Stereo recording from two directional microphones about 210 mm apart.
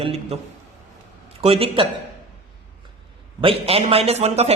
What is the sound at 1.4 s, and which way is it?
Speech, 30° right (ahead or behind).